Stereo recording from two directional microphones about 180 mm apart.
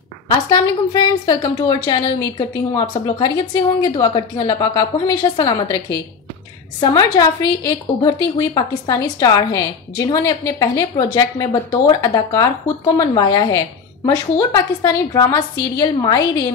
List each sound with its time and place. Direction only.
0.5 s speech: 20° left (ahead or behind)